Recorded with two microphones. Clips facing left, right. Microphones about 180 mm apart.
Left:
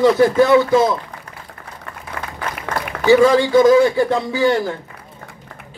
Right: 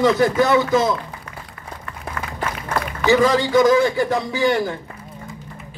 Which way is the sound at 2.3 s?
80° left.